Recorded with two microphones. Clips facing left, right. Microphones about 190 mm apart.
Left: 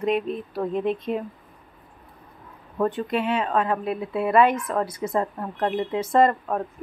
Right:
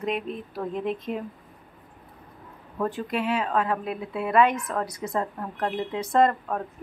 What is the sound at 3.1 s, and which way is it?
Speech, centre (ahead or behind).